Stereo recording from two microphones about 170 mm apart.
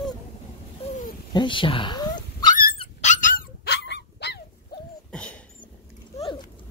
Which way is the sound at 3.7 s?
80° left.